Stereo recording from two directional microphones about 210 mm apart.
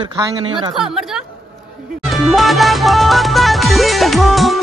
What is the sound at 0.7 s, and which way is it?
Speech, centre (ahead or behind).